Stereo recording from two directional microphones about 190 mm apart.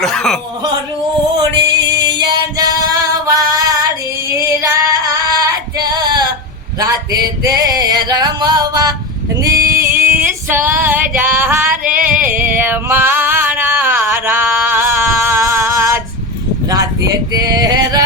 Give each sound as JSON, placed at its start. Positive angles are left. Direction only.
{"t": 0.0, "sound": "speech", "side_deg": 0}
{"t": 2.0, "sound": "female singing", "side_deg": -20}
{"t": 6.7, "sound": "male singing", "side_deg": -20}
{"t": 9.4, "sound": "a sound", "side_deg": -15}
{"t": 10.2, "sound": "female singing", "side_deg": -10}
{"t": 12.1, "sound": "a sound", "side_deg": -10}
{"t": 16.6, "sound": "male singing", "side_deg": -20}